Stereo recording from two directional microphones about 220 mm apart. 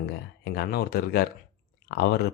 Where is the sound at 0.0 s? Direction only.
45° left (ahead or behind).